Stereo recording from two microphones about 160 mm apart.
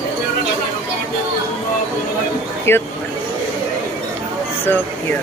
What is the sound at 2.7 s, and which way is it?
Speech, 15° left (ahead or behind).